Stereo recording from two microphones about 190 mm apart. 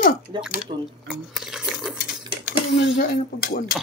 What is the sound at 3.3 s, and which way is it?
Speech, 50° left (ahead or behind).